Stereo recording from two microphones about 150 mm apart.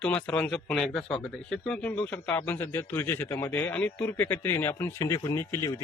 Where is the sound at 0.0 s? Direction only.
10° left (ahead or behind).